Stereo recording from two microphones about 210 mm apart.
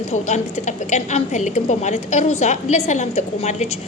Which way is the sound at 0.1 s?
35° left (ahead or behind).